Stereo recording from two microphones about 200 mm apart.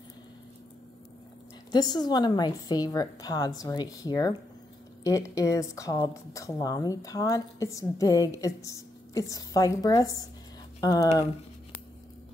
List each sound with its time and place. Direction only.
1.7 s a woman's voice: 20° left (ahead or behind)